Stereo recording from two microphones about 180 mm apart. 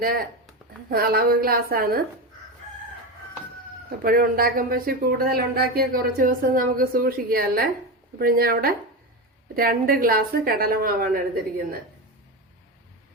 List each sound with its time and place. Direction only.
0.0 s a woman's voice: 55° right (ahead or behind)
4.0 s a woman's voice: 55° right (ahead or behind)